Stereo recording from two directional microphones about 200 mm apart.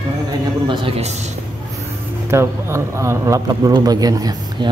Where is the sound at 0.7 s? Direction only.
30° right (ahead or behind).